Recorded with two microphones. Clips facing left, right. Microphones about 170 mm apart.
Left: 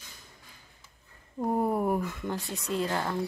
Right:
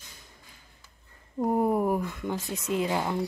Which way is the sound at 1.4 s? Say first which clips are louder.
Right 3 dB; 5° right (ahead or behind).